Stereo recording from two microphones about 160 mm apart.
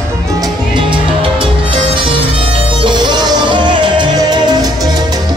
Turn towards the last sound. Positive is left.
turn(degrees=-25)  # may be behind; listen again after turning